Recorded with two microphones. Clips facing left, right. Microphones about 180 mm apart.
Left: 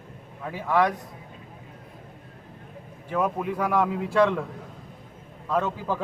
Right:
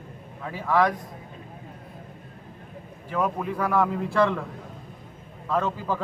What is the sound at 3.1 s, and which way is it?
A man's voice, 15° left (ahead or behind).